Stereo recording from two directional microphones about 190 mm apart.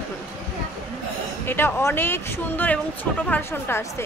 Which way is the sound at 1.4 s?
10° left (ahead or behind).